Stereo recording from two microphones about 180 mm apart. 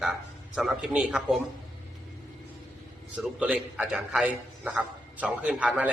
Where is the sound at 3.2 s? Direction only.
5° right (ahead or behind).